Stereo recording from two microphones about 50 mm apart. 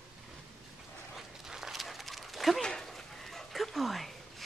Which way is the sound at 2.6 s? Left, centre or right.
Centre.